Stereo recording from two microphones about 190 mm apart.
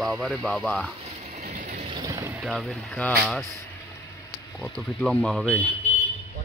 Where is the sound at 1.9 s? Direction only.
20° right (ahead or behind).